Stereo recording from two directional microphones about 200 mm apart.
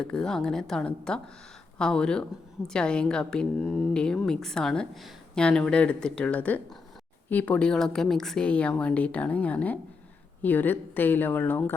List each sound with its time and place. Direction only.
0.0 s a woman's voice: 5° left (ahead or behind)